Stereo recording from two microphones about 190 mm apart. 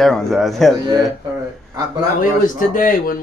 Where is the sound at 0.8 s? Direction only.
15° right (ahead or behind).